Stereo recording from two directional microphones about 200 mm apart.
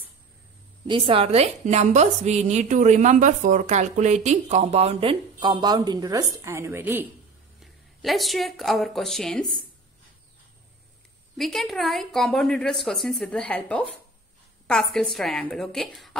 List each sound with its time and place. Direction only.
0.8 s a woman's voice: 25° right (ahead or behind); by 7.1 s 10° right (ahead or behind)
7.6 s speech: centre (ahead or behind)
11.3 s a woman's voice: centre (ahead or behind)